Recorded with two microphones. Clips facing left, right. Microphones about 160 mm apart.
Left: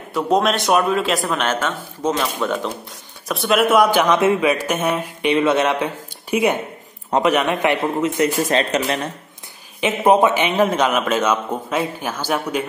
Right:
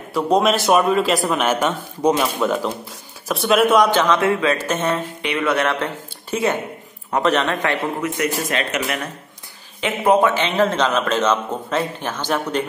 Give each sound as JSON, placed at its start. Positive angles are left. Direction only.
{"t": 0.1, "sound": "a man's voice", "side_deg": 0}
{"t": 5.2, "sound": "a man's voice", "side_deg": 25}
{"t": 9.8, "sound": "a man's voice", "side_deg": 20}